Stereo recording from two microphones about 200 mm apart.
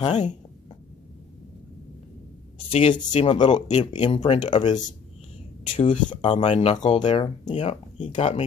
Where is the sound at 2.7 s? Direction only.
30° left (ahead or behind).